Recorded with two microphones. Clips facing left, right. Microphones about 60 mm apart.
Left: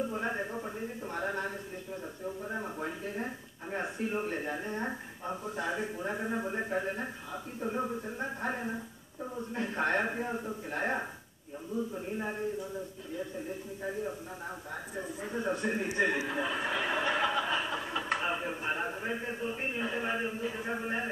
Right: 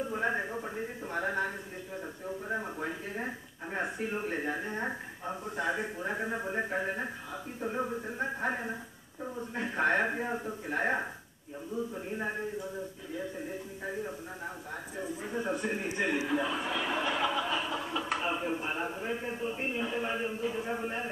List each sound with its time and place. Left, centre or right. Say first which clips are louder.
0.1 s a man's voice: right 2 dB; centre
4.3 s a man's voice: right 1 dB; centre
15.0 s a man's voice: right 1 dB; centre
16.2 s speech: right 1 dB; centre